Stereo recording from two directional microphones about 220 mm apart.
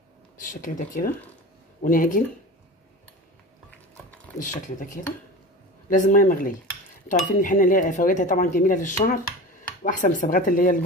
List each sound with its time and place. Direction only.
0.4 s speech: 40° left (ahead or behind)
4.4 s speech: 35° left (ahead or behind)